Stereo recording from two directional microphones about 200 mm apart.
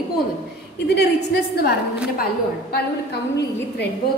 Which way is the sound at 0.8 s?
55° left (ahead or behind).